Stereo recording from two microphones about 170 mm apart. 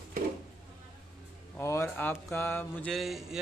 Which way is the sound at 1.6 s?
15° left (ahead or behind).